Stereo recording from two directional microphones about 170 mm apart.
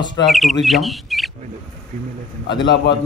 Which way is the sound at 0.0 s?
25° left (ahead or behind).